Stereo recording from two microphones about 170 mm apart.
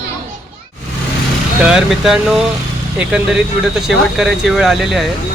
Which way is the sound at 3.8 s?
Centre (ahead or behind).